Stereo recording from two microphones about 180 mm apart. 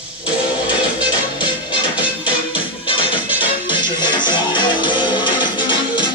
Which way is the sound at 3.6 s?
25° left (ahead or behind).